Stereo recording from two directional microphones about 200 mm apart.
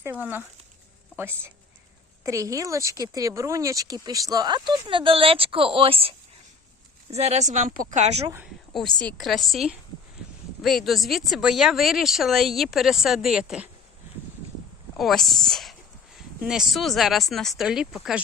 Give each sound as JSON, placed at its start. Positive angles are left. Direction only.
{"t": 0.0, "sound": "a woman's voice", "side_deg": -10}
{"t": 8.7, "sound": "speech", "side_deg": 5}
{"t": 14.9, "sound": "speech", "side_deg": 0}